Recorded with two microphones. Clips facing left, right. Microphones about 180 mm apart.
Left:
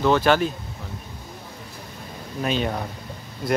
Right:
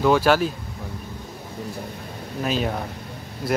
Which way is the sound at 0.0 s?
5° right (ahead or behind).